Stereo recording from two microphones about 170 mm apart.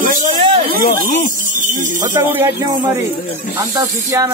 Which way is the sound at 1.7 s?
50° right (ahead or behind).